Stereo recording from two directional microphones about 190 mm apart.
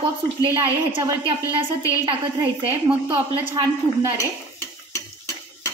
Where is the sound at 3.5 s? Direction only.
15° right (ahead or behind).